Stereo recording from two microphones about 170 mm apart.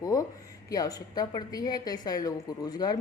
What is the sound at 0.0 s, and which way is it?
A woman's voice, 20° left (ahead or behind).